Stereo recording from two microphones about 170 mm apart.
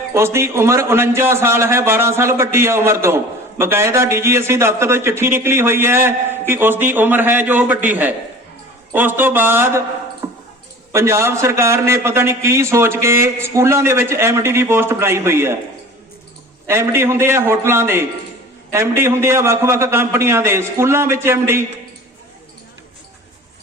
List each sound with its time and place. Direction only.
0.1 s a man's voice: 15° right (ahead or behind)
10.9 s a man's voice: 15° right (ahead or behind)
16.6 s a man's voice: 15° right (ahead or behind)